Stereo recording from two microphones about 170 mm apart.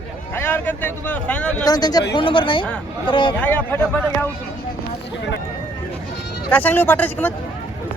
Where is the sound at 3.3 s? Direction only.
10° left (ahead or behind).